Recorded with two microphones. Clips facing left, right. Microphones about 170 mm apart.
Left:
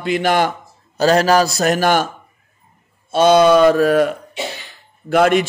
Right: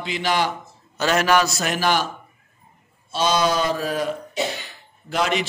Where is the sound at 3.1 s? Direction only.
55° left (ahead or behind).